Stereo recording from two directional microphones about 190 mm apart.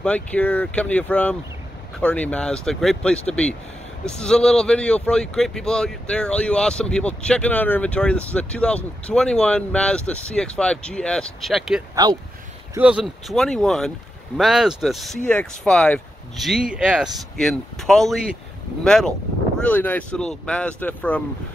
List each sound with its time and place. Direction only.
0.0 s speech: 5° left (ahead or behind)
11.9 s speech: 20° right (ahead or behind)
12.7 s speech: 5° right (ahead or behind)